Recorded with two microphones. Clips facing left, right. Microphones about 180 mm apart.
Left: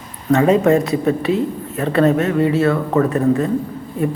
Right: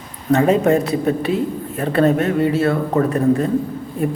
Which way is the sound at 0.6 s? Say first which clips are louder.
Left 1 dB; 35° right (ahead or behind).